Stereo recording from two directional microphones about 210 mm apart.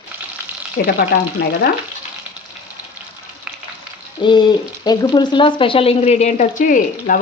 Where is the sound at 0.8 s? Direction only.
50° left (ahead or behind).